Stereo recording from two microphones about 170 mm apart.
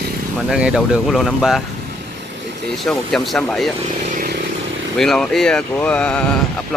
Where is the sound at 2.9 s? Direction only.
5° left (ahead or behind).